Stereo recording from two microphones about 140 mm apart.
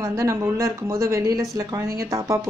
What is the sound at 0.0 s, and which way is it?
A woman's voice, 25° right (ahead or behind).